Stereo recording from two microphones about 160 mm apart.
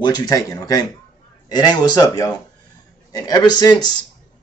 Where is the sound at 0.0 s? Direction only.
25° left (ahead or behind).